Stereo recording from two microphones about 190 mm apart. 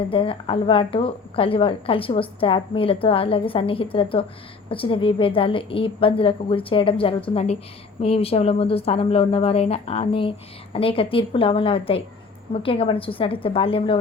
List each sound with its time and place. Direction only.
0.1 s a woman's voice: 30° left (ahead or behind)